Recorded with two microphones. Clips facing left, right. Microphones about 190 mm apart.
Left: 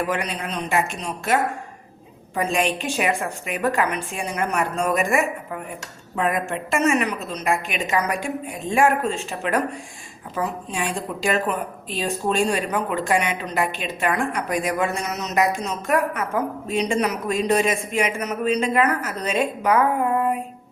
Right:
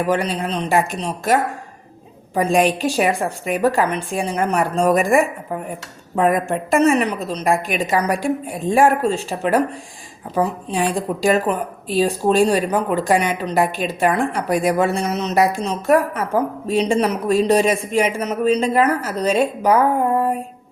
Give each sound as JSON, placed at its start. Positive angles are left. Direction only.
{"t": 0.1, "sound": "a woman's voice", "side_deg": -30}